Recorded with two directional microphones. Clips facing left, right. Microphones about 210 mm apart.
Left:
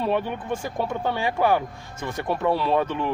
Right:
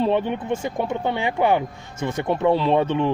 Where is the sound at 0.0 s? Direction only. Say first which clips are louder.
Right 4 dB; 25° right (ahead or behind).